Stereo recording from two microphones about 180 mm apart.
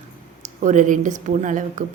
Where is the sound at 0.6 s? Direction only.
45° right (ahead or behind).